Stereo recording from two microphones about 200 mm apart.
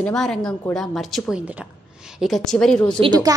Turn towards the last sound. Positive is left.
turn(degrees=-20)  # may be behind; listen again after turning